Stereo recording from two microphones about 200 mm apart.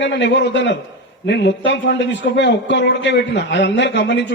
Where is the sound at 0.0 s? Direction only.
60° left (ahead or behind).